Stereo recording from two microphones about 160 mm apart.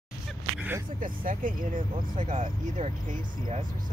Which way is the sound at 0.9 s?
60° right (ahead or behind).